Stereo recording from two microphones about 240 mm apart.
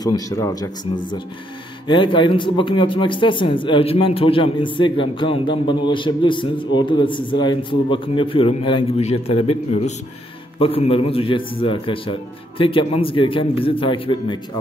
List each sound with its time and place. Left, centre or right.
0.0 s speech: centre
1.9 s speech: centre